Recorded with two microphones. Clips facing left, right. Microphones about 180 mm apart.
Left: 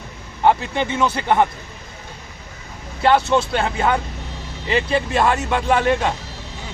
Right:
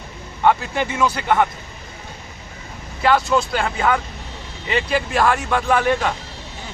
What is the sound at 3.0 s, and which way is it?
Speech, 25° left (ahead or behind).